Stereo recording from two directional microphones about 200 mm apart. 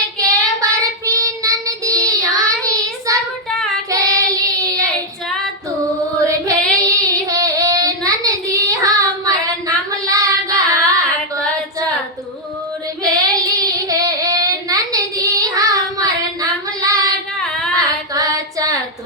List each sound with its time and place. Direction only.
0.2 s child singing: 15° right (ahead or behind)
6.2 s female singing: 15° right (ahead or behind)
6.7 s child singing: 15° right (ahead or behind)
13.0 s child singing: 15° right (ahead or behind)
17.7 s female singing: 15° right (ahead or behind)